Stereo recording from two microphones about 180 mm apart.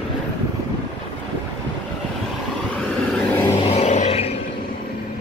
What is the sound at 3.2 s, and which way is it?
Vehicle, 10° left (ahead or behind).